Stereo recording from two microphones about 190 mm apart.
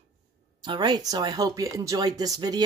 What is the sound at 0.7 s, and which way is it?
Speech, 20° right (ahead or behind).